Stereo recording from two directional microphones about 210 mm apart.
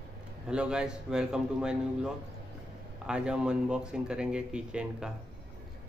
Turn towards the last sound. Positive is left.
turn(degrees=-5)  # may be behind; listen again after turning